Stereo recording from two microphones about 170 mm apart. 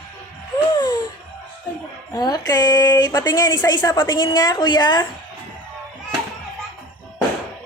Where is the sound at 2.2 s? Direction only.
25° left (ahead or behind).